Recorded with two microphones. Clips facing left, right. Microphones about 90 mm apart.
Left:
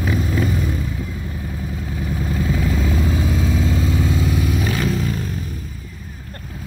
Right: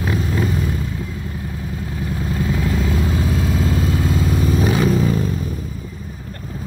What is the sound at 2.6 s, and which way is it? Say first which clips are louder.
Vehicle: even; centre (ahead or behind).